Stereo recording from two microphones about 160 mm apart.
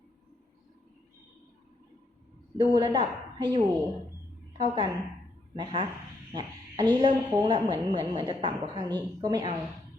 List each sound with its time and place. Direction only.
2.6 s a woman's voice: 25° right (ahead or behind)